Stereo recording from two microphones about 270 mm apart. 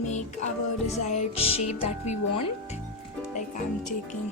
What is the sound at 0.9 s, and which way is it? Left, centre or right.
Speech, left.